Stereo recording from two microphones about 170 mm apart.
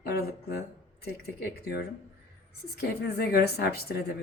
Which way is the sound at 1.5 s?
70° left (ahead or behind).